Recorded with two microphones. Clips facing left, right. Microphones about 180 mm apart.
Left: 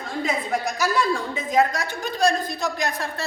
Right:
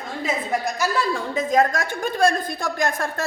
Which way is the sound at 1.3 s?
45° right (ahead or behind).